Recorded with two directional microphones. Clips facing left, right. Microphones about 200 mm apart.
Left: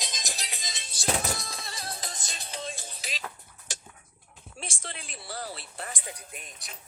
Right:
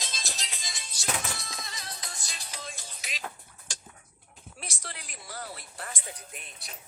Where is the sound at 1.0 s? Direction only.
35° left (ahead or behind).